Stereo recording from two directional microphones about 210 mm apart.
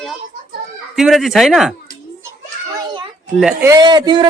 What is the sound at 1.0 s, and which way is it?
Speech, centre (ahead or behind).